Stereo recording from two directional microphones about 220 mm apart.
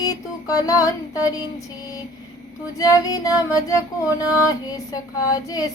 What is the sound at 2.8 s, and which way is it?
Female singing, 15° left (ahead or behind).